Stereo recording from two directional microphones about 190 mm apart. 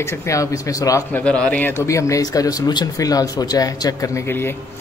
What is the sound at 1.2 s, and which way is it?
Speech, 5° left (ahead or behind).